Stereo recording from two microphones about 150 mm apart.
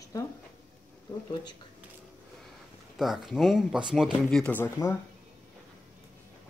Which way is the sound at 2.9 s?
Centre (ahead or behind).